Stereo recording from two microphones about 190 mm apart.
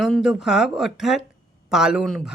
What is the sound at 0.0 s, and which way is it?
Speech, centre (ahead or behind).